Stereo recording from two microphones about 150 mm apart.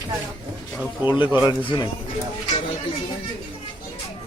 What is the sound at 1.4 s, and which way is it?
Speech, 30° left (ahead or behind).